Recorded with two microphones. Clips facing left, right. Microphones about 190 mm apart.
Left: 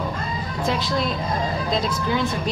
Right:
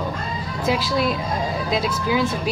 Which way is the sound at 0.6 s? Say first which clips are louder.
Right 3 dB; 5° right (ahead or behind).